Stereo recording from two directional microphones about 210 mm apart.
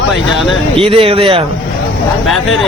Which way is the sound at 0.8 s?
25° right (ahead or behind).